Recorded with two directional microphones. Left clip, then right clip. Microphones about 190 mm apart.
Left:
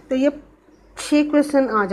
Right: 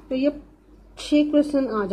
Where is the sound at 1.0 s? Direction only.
15° left (ahead or behind).